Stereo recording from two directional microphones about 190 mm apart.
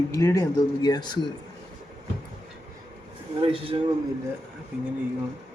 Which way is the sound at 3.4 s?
30° right (ahead or behind).